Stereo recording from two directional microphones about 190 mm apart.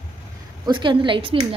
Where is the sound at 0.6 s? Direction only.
25° right (ahead or behind).